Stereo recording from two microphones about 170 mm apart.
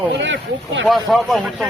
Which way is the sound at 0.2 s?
90° right.